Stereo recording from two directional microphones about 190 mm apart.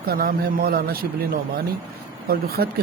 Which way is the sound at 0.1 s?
50° right (ahead or behind).